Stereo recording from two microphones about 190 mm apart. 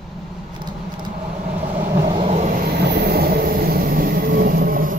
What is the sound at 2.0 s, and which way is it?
Vehicle, 35° right (ahead or behind).